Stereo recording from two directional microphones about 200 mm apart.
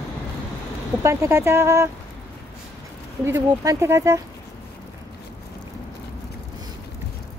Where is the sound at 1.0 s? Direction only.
15° right (ahead or behind).